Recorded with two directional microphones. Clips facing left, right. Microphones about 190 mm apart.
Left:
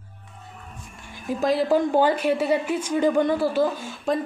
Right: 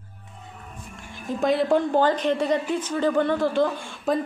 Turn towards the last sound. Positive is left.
turn(degrees=5)  # may be behind; listen again after turning